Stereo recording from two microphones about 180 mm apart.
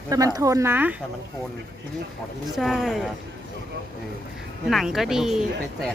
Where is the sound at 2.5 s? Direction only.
Centre (ahead or behind).